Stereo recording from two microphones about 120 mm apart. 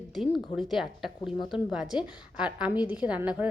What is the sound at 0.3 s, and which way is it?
A woman's voice, centre (ahead or behind).